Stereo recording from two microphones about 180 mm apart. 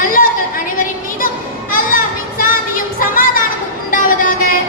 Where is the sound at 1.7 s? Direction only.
50° left (ahead or behind).